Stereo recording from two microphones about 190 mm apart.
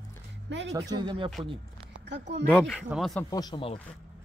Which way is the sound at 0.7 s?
20° right (ahead or behind).